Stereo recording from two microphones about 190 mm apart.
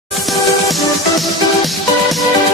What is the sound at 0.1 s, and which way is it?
Music, centre (ahead or behind).